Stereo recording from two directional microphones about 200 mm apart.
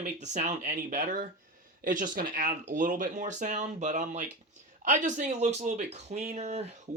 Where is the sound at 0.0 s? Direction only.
35° right (ahead or behind).